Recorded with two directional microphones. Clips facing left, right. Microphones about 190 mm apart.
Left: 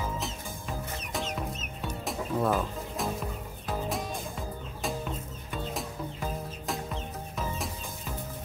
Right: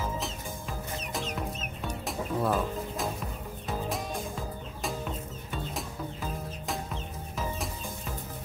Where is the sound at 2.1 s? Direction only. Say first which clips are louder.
Left 1 dB; centre (ahead or behind).